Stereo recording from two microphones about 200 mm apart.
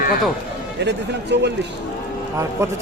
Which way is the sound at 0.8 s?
55° right (ahead or behind).